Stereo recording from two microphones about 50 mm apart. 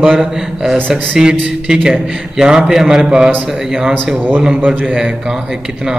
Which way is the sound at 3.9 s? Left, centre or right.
Right.